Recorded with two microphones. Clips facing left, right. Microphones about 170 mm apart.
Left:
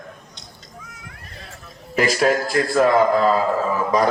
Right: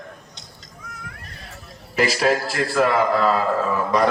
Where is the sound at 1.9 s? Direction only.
45° left (ahead or behind).